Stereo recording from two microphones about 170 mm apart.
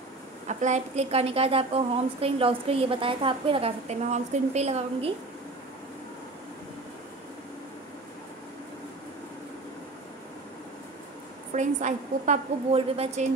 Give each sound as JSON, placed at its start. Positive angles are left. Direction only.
{"t": 0.5, "sound": "a woman's voice", "side_deg": -45}
{"t": 11.5, "sound": "a woman's voice", "side_deg": -45}